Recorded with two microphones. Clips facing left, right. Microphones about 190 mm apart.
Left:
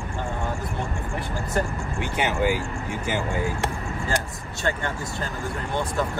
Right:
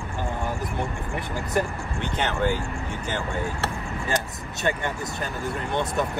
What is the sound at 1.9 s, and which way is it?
Speech, 10° left (ahead or behind).